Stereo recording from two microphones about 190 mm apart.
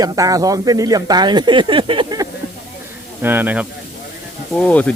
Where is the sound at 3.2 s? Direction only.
10° right (ahead or behind).